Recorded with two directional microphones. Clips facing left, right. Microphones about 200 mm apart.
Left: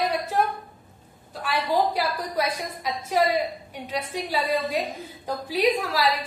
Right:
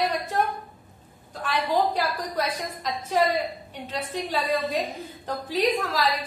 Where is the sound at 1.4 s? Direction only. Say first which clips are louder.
Even; 10° left (ahead or behind).